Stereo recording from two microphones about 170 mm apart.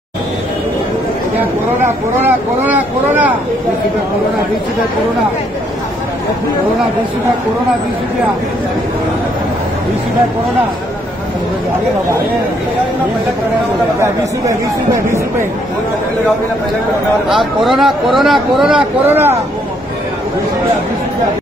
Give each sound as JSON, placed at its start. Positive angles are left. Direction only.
{"t": 2.2, "sound": "speech", "side_deg": -10}
{"t": 14.0, "sound": "speech", "side_deg": -20}
{"t": 17.6, "sound": "a man's voice", "side_deg": 0}
{"t": 19.0, "sound": "speech", "side_deg": -10}